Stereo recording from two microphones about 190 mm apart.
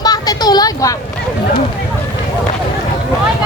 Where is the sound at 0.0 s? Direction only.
20° left (ahead or behind).